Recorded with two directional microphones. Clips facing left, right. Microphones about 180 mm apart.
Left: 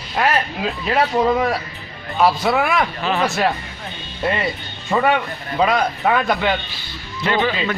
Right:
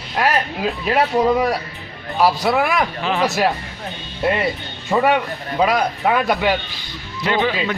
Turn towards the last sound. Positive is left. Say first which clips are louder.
# even
turn(degrees=-10)  # may be behind; listen again after turning